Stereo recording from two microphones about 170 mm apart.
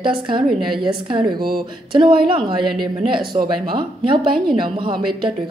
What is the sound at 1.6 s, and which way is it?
Speech, 30° right (ahead or behind).